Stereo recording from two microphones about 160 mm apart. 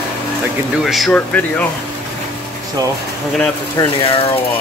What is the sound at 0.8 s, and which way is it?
Speech, centre (ahead or behind).